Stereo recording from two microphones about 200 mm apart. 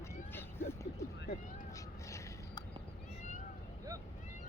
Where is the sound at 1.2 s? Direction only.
55° left (ahead or behind).